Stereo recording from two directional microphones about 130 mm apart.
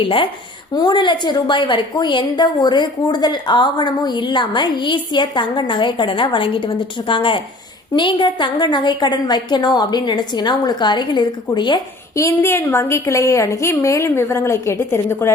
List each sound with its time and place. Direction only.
0.0 s a woman's voice: 40° left (ahead or behind)
12.1 s a woman's voice: 20° left (ahead or behind)